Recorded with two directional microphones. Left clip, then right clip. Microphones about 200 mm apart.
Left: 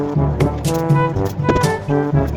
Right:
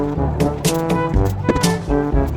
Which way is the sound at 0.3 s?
Centre (ahead or behind).